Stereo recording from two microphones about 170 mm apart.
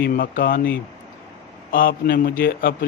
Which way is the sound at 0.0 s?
55° left (ahead or behind).